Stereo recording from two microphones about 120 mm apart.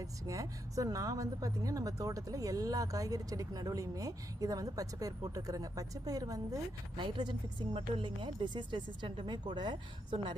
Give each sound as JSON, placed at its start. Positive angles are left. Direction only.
{"t": 0.0, "sound": "a woman's voice", "side_deg": -30}
{"t": 6.9, "sound": "a woman's voice", "side_deg": -40}